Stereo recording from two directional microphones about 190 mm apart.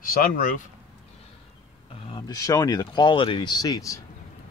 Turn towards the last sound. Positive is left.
turn(degrees=20)  # may be behind; listen again after turning